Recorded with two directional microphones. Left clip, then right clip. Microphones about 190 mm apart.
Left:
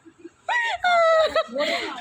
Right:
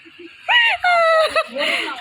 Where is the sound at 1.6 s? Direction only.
10° left (ahead or behind).